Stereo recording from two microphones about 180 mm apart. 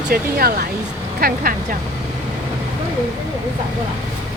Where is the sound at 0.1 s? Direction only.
55° right (ahead or behind).